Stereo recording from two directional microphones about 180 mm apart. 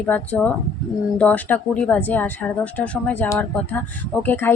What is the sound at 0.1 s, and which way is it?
A woman's voice, 10° left (ahead or behind).